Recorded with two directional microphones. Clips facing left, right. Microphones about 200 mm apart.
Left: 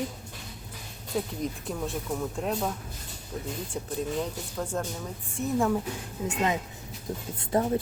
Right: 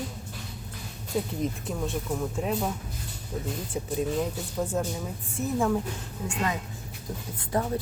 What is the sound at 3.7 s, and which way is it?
Speech, 10° right (ahead or behind).